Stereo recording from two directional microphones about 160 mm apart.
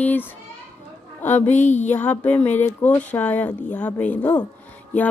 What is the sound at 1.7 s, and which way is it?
Music, 50° left (ahead or behind).